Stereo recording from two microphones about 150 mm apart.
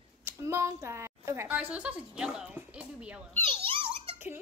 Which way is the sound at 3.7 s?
40° right (ahead or behind).